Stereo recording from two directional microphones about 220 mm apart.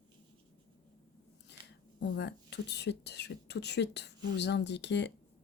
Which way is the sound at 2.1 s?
50° left (ahead or behind).